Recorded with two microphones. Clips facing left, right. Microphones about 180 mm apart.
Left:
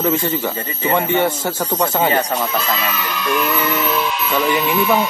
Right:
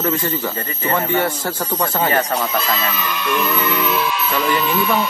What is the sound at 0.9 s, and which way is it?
Speech, 25° left (ahead or behind).